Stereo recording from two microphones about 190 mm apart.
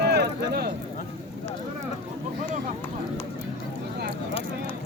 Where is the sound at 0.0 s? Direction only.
60° right (ahead or behind).